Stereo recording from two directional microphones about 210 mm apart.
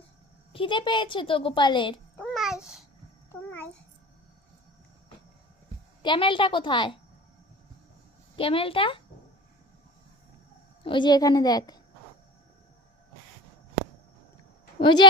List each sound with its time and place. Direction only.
0.5 s a woman's voice: 25° left (ahead or behind)
2.1 s babbling: 5° left (ahead or behind)
6.0 s a woman's voice: 25° left (ahead or behind)
8.4 s a woman's voice: 25° left (ahead or behind)
10.8 s a woman's voice: 20° left (ahead or behind)
14.8 s speech: 20° left (ahead or behind)